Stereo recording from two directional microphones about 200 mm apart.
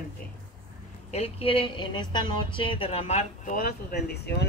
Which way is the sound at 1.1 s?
30° left (ahead or behind).